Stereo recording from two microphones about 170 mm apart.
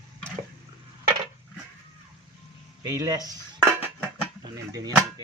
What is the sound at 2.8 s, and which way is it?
Speech, 20° right (ahead or behind).